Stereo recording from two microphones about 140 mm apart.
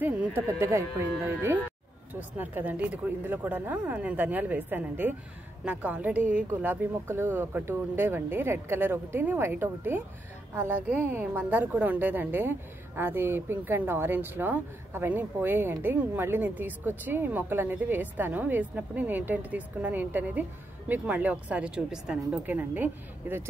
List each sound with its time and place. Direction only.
0.0 s a woman's voice: 15° right (ahead or behind)